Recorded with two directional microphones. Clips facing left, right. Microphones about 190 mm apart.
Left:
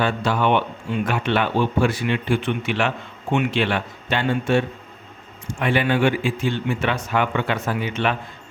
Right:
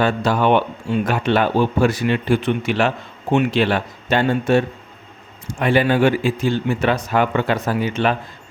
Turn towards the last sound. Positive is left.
turn(degrees=-40)  # may be behind; listen again after turning